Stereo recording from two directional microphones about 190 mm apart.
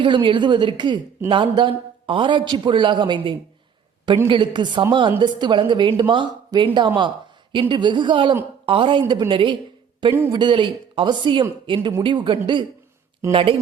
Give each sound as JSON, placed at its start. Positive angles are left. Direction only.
{"t": 0.0, "sound": "a man's voice", "side_deg": -25}